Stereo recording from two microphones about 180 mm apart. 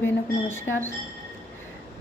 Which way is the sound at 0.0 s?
10° left (ahead or behind).